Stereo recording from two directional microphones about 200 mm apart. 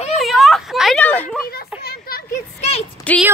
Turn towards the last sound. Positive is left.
turn(degrees=5)  # may be behind; listen again after turning